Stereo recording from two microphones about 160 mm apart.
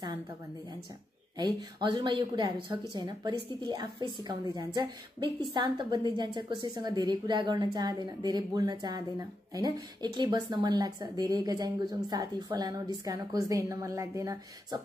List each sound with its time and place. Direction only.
1.4 s a woman's voice: 30° right (ahead or behind)